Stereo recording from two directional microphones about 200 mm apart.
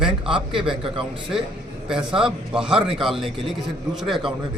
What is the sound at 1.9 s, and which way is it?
A man's voice, 5° right (ahead or behind).